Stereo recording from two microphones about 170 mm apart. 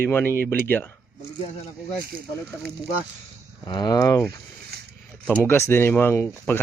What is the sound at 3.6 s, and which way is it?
Speech, 25° left (ahead or behind).